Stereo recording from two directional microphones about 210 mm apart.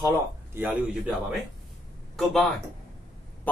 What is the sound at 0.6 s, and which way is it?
Speech, 10° right (ahead or behind).